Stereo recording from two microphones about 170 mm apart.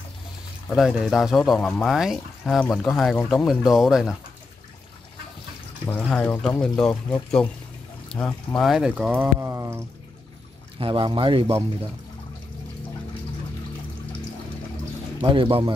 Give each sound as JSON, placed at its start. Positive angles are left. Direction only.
{"t": 0.7, "sound": "speech", "side_deg": 0}
{"t": 5.9, "sound": "speech", "side_deg": 10}
{"t": 10.8, "sound": "speech", "side_deg": -30}
{"t": 15.2, "sound": "speech", "side_deg": -30}